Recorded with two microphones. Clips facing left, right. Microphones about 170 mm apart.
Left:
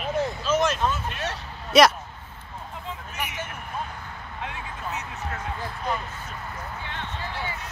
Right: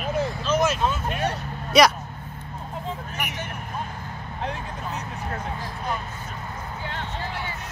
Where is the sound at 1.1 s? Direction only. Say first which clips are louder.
Right 5 dB; 55° right (ahead or behind).